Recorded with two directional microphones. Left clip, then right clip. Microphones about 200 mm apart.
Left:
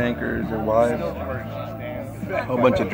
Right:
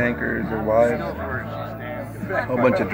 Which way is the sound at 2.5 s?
5° left (ahead or behind).